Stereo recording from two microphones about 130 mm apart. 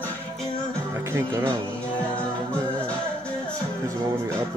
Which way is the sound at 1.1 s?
20° right (ahead or behind).